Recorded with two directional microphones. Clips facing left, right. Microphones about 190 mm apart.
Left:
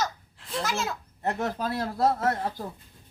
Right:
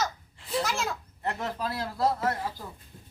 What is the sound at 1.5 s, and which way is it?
Speech, 45° left (ahead or behind).